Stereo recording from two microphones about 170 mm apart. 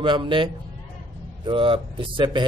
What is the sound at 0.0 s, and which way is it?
Speech, 30° right (ahead or behind).